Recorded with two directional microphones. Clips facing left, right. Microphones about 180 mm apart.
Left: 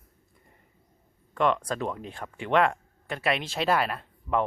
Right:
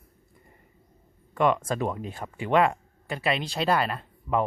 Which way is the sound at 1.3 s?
5° right (ahead or behind).